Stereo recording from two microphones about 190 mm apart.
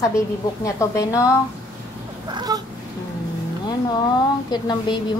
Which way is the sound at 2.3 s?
20° right (ahead or behind).